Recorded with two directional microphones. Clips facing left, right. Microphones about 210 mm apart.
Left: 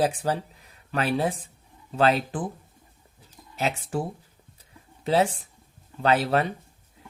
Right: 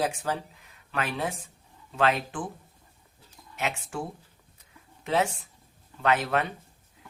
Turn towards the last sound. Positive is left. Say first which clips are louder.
# left 3 dB
turn(degrees=35)  # may be behind; listen again after turning